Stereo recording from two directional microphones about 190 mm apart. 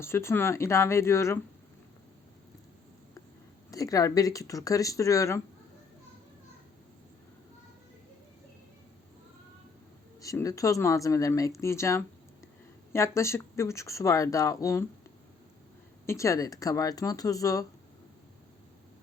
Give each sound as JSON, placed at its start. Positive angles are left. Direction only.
{"t": 0.0, "sound": "speech", "side_deg": 15}
{"t": 3.7, "sound": "speech", "side_deg": 20}
{"t": 10.2, "sound": "speech", "side_deg": 15}
{"t": 16.0, "sound": "speech", "side_deg": 15}